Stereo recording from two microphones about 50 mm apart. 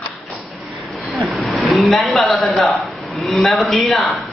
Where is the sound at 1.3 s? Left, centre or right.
Centre.